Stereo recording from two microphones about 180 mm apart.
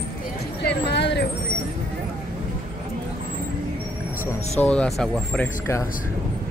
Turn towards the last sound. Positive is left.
turn(degrees=5)  # may be behind; listen again after turning